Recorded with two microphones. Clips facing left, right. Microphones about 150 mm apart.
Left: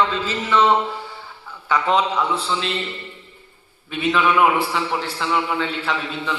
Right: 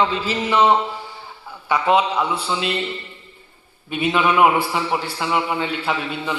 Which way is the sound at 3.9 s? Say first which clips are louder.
Even; 15° right (ahead or behind).